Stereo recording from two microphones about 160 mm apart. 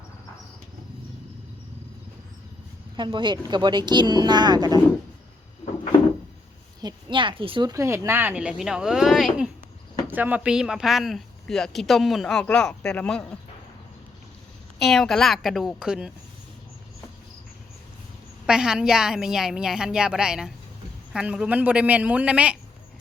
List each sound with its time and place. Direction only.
2.9 s speech: 30° right (ahead or behind)
6.8 s speech: 30° right (ahead or behind)
7.7 s speech: 20° right (ahead or behind); by 13.3 s 5° left (ahead or behind)
14.8 s speech: centre (ahead or behind)
18.4 s a man's voice: 5° right (ahead or behind)